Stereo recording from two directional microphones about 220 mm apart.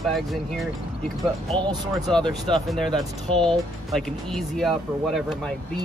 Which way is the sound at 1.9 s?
Centre (ahead or behind).